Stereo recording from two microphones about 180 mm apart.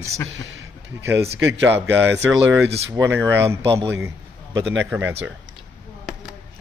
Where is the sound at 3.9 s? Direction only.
15° right (ahead or behind).